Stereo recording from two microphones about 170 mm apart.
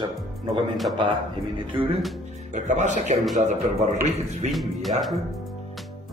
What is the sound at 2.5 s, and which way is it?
A man's voice, 45° right (ahead or behind).